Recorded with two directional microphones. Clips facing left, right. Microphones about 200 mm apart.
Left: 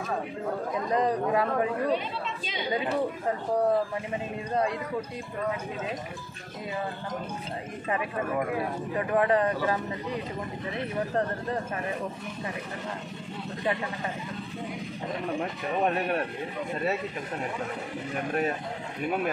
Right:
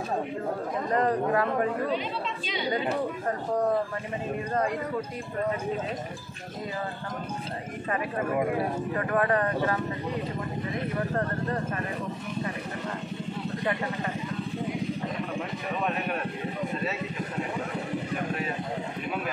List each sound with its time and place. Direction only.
0.8 s speech: 15° left (ahead or behind)
8.9 s speech: 20° left (ahead or behind)
11.1 s speech: 15° left (ahead or behind)